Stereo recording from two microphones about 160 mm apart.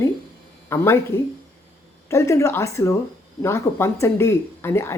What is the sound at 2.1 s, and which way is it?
Speech, 20° left (ahead or behind).